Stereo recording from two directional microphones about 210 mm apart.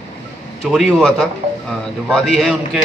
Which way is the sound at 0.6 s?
Centre (ahead or behind).